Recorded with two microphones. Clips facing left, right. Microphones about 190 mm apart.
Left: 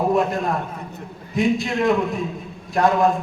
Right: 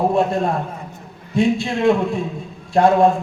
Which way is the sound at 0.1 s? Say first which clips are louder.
Right 2 dB; 30° right (ahead or behind).